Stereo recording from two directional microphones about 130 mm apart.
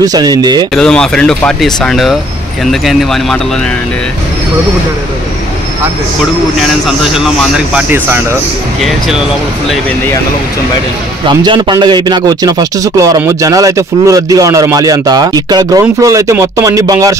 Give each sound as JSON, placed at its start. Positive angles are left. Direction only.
{"t": 0.0, "sound": "speech", "side_deg": -30}
{"t": 0.7, "sound": "speech", "side_deg": 5}
{"t": 6.6, "sound": "speech", "side_deg": -5}
{"t": 11.2, "sound": "a man's voice", "side_deg": -40}